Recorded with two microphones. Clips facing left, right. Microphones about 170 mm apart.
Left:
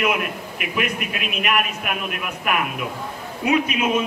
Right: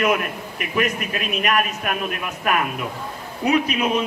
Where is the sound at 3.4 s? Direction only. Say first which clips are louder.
Right 1 dB; 35° right (ahead or behind).